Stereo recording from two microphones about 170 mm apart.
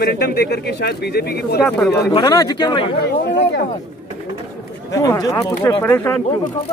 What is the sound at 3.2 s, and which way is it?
Speech, 80° left.